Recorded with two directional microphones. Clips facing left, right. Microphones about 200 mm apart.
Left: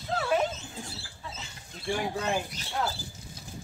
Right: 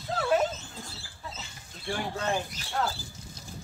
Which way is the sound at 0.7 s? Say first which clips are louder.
Left 3 dB; 15° left (ahead or behind).